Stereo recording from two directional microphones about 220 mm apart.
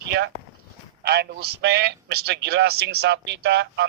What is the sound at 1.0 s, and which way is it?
A man's voice, 45° right (ahead or behind).